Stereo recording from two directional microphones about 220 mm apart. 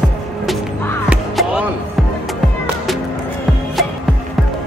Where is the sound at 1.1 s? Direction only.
5° right (ahead or behind).